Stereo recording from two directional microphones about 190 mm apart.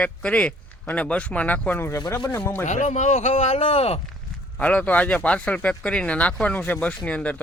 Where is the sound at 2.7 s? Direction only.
35° left (ahead or behind).